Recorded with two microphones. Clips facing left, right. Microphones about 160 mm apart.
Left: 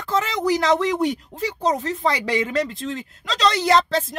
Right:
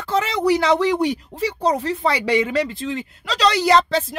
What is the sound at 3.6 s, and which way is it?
Speech, centre (ahead or behind).